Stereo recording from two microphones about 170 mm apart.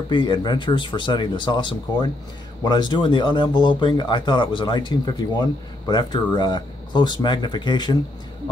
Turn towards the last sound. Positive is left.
turn(degrees=25)  # may be behind; listen again after turning